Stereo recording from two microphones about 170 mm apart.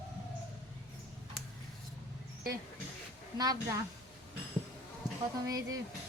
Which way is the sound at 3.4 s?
25° right (ahead or behind).